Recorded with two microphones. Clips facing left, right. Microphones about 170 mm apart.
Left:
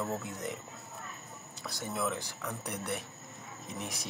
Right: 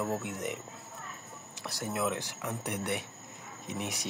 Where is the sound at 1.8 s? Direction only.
10° right (ahead or behind).